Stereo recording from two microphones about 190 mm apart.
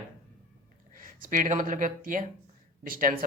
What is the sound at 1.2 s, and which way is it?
Speech, 45° right (ahead or behind).